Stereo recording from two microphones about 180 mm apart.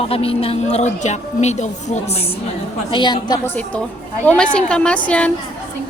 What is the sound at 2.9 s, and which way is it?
Speech, 25° left (ahead or behind).